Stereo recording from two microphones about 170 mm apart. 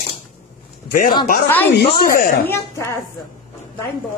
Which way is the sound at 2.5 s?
15° left (ahead or behind).